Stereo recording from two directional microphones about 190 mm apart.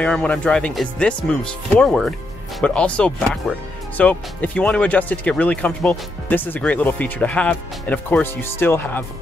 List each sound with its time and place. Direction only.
0.0 s speech: 5° left (ahead or behind)